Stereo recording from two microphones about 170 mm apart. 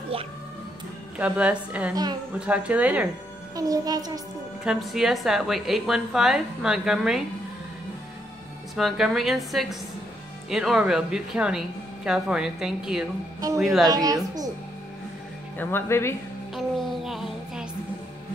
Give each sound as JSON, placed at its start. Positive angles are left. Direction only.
{"t": 1.1, "sound": "a woman's voice", "side_deg": -10}
{"t": 3.5, "sound": "a child's voice", "side_deg": -20}
{"t": 4.6, "sound": "a woman's voice", "side_deg": 0}
{"t": 8.7, "sound": "a woman's voice", "side_deg": 0}
{"t": 13.8, "sound": "a child's voice", "side_deg": -20}
{"t": 15.5, "sound": "speech", "side_deg": 10}
{"t": 16.5, "sound": "music", "side_deg": 0}